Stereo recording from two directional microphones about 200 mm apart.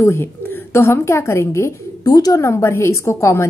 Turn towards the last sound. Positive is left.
turn(degrees=15)  # may be behind; listen again after turning